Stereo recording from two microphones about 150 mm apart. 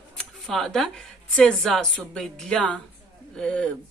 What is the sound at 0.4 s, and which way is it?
Speech, centre (ahead or behind).